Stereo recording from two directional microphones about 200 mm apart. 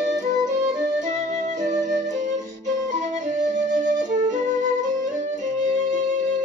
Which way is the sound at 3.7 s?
40° right (ahead or behind).